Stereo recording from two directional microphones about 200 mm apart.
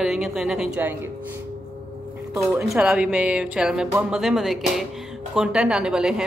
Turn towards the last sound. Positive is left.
turn(degrees=-5)  # may be behind; listen again after turning